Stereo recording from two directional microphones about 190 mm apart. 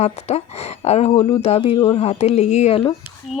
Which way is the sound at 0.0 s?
35° left (ahead or behind).